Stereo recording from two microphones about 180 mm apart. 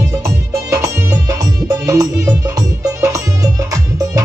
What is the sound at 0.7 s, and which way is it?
Music, 20° right (ahead or behind).